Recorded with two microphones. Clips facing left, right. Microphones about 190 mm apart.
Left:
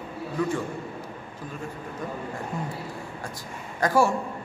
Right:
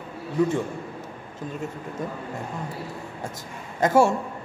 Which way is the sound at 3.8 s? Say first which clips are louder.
Right 3 dB; 25° right (ahead or behind).